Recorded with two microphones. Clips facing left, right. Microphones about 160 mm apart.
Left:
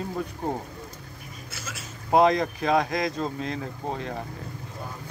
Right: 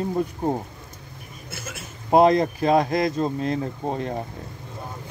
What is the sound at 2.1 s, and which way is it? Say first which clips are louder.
Speech: right 4 dB; 30° right (ahead or behind).